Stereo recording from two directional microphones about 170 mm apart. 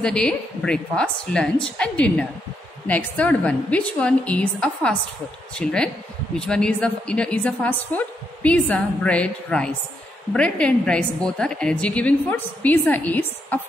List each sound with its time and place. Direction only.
0.0 s a woman's voice: 5° left (ahead or behind)